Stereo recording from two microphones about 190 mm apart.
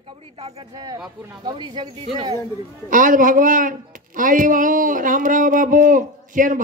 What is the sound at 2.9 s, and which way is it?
Speech, 45° right (ahead or behind).